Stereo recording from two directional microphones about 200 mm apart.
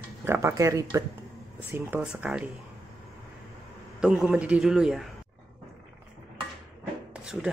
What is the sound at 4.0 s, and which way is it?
A man's voice, 5° right (ahead or behind).